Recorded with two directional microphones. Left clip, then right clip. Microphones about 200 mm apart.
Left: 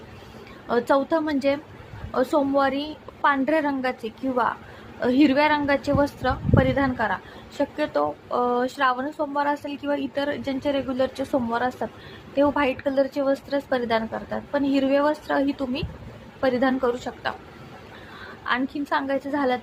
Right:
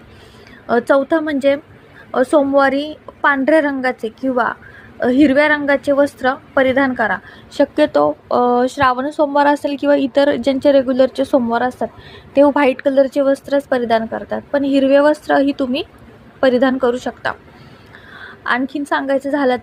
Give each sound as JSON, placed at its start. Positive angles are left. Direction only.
{"t": 0.7, "sound": "a woman's voice", "side_deg": -25}